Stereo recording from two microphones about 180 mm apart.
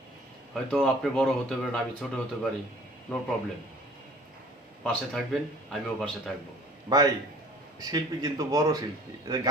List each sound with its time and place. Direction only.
0.5 s speech: 5° left (ahead or behind)
4.8 s speech: 5° left (ahead or behind)
6.9 s speech: 25° right (ahead or behind)